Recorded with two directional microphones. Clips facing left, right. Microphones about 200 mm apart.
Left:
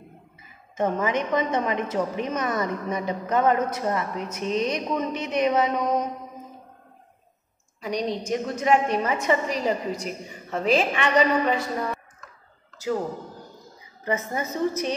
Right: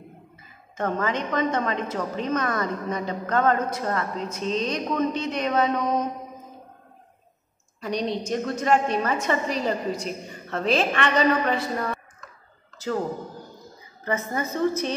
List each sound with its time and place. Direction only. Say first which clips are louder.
0.7 s a woman's voice: left 2 dB; 15° left (ahead or behind)
7.8 s a woman's voice: even; 15° left (ahead or behind)
14.0 s a woman's voice: even; 20° left (ahead or behind)